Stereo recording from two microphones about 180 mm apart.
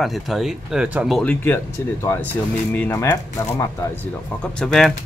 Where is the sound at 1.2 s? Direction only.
10° left (ahead or behind).